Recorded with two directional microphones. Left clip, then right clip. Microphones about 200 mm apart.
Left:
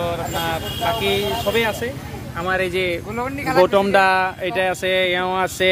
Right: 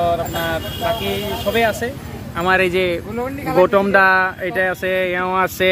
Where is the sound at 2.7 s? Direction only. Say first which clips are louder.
Right 3 dB; 20° right (ahead or behind).